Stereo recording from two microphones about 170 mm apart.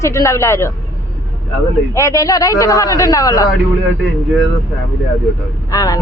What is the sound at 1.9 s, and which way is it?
A man's voice, 20° left (ahead or behind).